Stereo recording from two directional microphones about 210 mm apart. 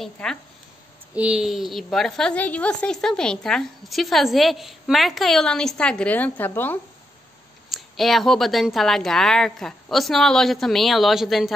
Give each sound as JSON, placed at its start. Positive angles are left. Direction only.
{"t": 0.0, "sound": "a woman's voice", "side_deg": 5}